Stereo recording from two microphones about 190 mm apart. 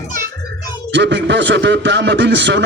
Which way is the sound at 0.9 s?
65° right (ahead or behind).